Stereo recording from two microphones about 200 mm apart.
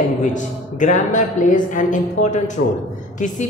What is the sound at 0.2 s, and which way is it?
A woman's voice, 40° left (ahead or behind).